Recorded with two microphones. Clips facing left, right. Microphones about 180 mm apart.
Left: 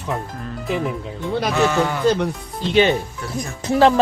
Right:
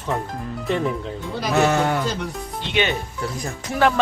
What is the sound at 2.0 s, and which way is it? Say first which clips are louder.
Speech: left 9 dB; 60° left (ahead or behind).